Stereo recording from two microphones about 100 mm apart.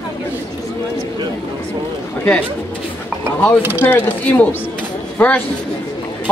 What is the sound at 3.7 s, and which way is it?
A man's voice, 15° left (ahead or behind).